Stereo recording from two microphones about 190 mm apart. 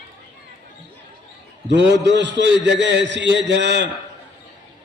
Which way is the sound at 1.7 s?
65° right (ahead or behind).